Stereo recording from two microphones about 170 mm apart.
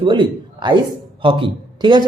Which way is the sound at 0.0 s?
30° right (ahead or behind).